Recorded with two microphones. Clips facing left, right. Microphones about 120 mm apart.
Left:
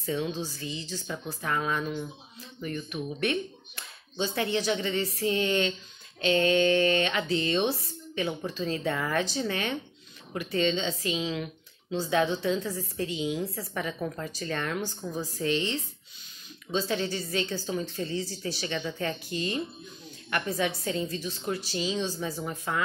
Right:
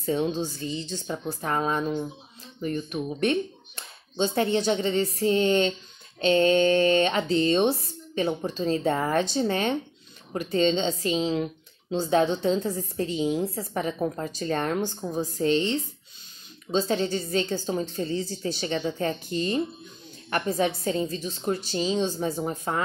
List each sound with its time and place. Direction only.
0.0 s speech: 30° right (ahead or behind)
16.7 s speech: 30° right (ahead or behind)